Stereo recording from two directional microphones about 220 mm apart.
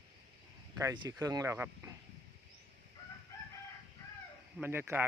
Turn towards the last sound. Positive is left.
turn(degrees=-10)  # may be behind; listen again after turning